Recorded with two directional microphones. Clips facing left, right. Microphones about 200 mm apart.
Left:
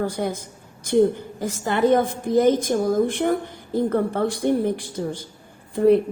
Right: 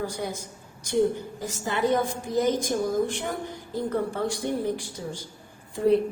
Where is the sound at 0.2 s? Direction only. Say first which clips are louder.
Left 6 dB; 60° left (ahead or behind).